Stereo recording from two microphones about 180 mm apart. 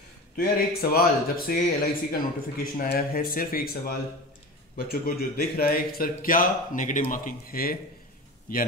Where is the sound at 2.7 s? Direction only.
55° left (ahead or behind).